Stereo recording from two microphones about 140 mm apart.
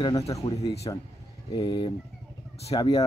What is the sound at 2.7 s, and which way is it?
Speech, 25° left (ahead or behind).